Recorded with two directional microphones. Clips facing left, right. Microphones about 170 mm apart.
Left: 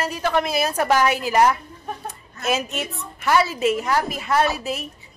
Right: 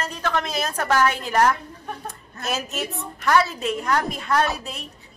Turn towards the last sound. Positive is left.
turn(degrees=5)  # may be behind; listen again after turning